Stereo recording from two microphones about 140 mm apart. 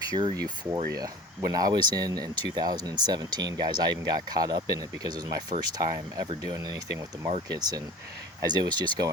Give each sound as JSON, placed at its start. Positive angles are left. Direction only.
{"t": 0.1, "sound": "speech", "side_deg": -35}
{"t": 8.4, "sound": "speech", "side_deg": -30}